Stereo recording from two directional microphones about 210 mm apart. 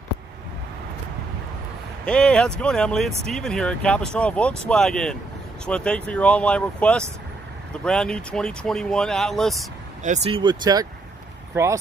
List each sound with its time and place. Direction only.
2.0 s speech: 5° left (ahead or behind)
10.0 s speech: 30° right (ahead or behind); by 11.8 s 15° right (ahead or behind)